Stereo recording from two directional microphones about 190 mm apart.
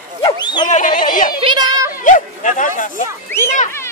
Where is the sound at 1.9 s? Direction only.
45° left (ahead or behind).